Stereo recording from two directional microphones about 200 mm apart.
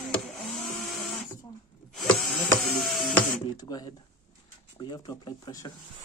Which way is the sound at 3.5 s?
20° left (ahead or behind).